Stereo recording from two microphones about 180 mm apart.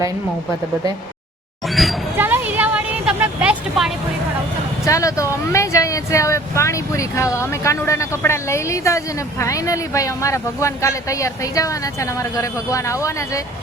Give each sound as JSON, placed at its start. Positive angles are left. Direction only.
{"t": 2.1, "sound": "vehicle", "side_deg": -10}
{"t": 4.9, "sound": "speech", "side_deg": 20}